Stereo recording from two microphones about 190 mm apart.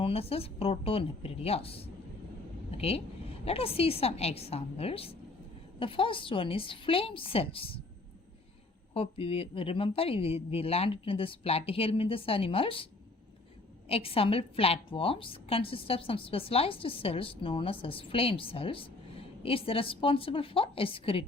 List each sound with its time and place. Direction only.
0.0 s a woman's voice: 30° left (ahead or behind)
8.9 s a woman's voice: 30° left (ahead or behind)